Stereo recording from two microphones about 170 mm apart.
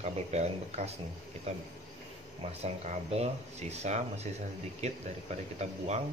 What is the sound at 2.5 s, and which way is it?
Speech, 40° right (ahead or behind).